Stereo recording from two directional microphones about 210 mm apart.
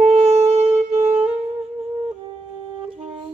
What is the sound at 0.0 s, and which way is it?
Shofar, 30° right (ahead or behind).